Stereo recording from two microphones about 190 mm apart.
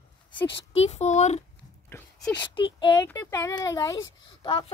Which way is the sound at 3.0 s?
15° left (ahead or behind).